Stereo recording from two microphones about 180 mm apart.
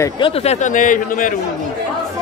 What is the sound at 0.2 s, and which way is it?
Speech, 35° left (ahead or behind).